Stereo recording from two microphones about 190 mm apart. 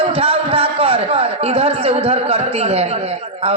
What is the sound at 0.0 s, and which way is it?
A woman's voice, 30° right (ahead or behind).